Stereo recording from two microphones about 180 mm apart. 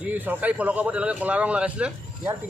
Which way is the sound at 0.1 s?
10° right (ahead or behind).